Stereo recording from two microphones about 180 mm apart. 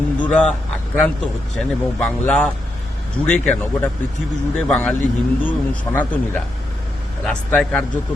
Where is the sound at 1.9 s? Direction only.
5° left (ahead or behind).